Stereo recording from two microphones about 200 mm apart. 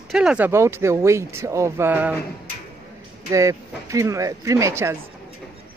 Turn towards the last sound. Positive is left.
turn(degrees=-15)  # may be behind; listen again after turning